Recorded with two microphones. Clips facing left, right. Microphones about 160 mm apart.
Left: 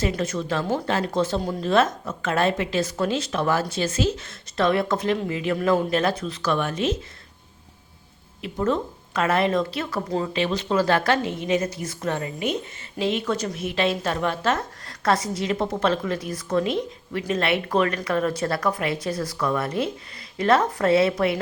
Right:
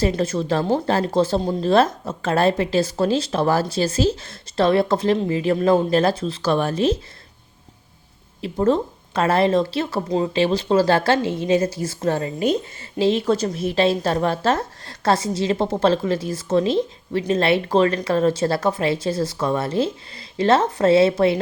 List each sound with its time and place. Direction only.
0.0 s speech: 30° right (ahead or behind)
8.4 s a woman's voice: 35° right (ahead or behind)